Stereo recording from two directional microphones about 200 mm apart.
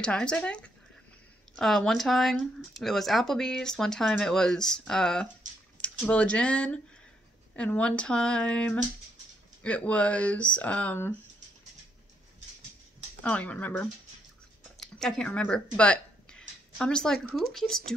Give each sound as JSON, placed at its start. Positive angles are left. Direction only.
{"t": 0.0, "sound": "speech", "side_deg": 5}
{"t": 13.2, "sound": "speech", "side_deg": 5}